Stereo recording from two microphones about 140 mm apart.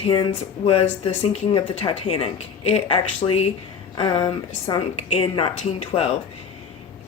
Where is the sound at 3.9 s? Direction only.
35° left (ahead or behind).